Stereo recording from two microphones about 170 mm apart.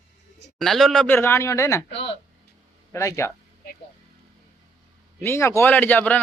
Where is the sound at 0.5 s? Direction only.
Centre (ahead or behind); by 1.8 s 20° left (ahead or behind).